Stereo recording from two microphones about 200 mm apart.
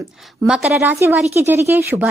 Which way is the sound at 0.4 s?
5° right (ahead or behind).